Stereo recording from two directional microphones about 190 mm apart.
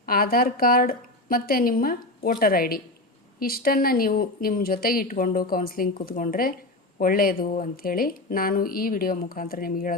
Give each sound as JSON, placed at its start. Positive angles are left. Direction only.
{"t": 0.0, "sound": "speech", "side_deg": 50}